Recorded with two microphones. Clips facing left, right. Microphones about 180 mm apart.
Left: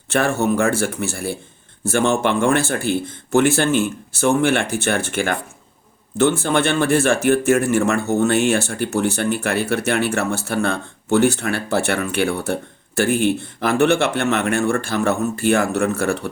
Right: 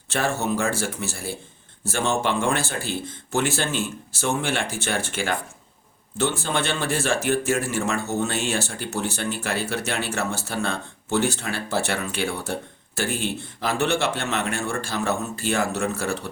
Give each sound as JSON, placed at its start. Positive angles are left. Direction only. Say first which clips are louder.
{"t": 0.1, "sound": "speech", "louder": "left 6 dB", "side_deg": 55}